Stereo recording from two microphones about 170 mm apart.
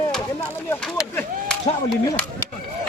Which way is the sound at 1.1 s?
5° left (ahead or behind).